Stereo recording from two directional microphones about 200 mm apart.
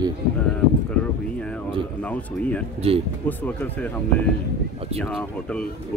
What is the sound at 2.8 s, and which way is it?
Speech, 30° right (ahead or behind).